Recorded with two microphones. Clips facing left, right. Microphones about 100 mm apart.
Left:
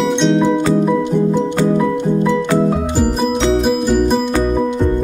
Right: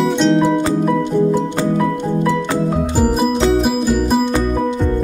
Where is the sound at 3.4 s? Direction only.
5° right (ahead or behind).